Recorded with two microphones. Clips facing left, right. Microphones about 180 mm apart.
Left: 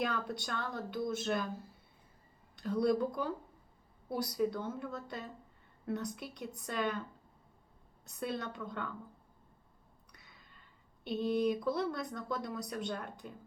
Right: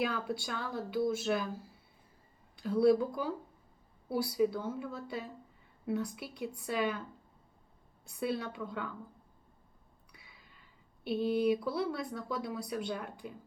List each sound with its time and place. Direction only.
0.0 s speech: 5° right (ahead or behind)
2.6 s speech: 5° right (ahead or behind)
8.0 s speech: 10° right (ahead or behind)
10.1 s speech: 10° right (ahead or behind)